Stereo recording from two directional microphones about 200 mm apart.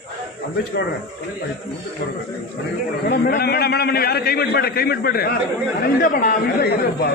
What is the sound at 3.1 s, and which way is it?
A man's voice, 50° left (ahead or behind).